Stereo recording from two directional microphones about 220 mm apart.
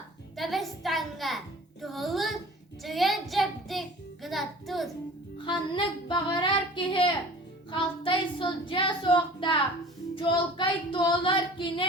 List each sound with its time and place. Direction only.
0.3 s a sound: centre (ahead or behind)
2.8 s child singing: centre (ahead or behind)
5.5 s female singing: 20° left (ahead or behind)
7.7 s child singing: 25° left (ahead or behind)